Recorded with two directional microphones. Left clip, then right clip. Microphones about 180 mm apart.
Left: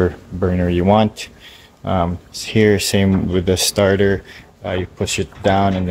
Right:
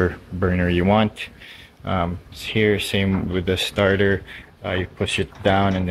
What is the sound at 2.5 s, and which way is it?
Speech, 30° left (ahead or behind).